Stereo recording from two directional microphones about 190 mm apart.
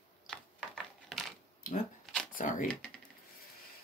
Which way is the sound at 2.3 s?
45° left (ahead or behind).